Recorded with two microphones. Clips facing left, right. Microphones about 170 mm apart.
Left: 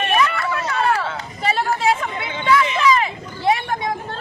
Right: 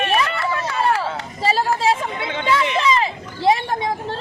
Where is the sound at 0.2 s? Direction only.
30° right (ahead or behind).